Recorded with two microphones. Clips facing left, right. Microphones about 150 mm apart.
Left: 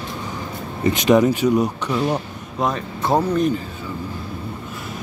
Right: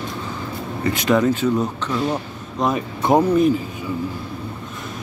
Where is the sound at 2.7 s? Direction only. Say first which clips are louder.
Right 4 dB; 15° right (ahead or behind).